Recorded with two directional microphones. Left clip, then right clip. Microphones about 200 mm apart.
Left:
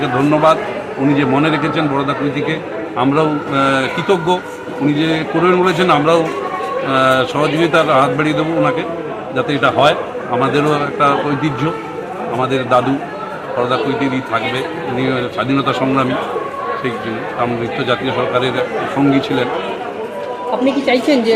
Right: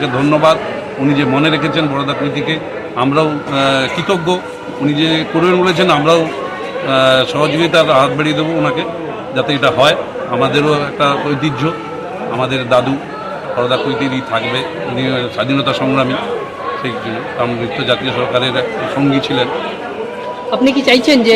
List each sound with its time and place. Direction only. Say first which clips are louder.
0.0 s a man's voice: right 1 dB; centre (ahead or behind)
14.5 s a man's voice: right 1 dB; centre (ahead or behind)
17.4 s a man's voice: right 1 dB; centre (ahead or behind)
20.8 s a woman's voice: right 4 dB; 40° right (ahead or behind)